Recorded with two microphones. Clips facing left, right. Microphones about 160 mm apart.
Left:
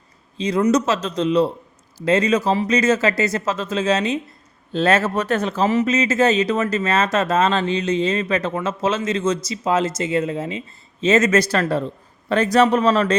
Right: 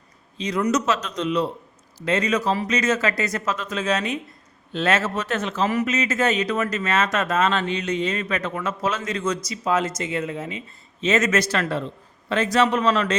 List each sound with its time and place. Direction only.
0.3 s a man's voice: 30° left (ahead or behind)